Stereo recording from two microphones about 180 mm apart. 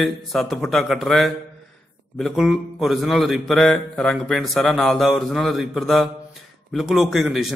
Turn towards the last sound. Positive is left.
turn(degrees=0)  # may be behind; listen again after turning